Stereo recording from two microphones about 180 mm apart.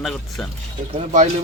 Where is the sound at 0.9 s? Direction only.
40° right (ahead or behind).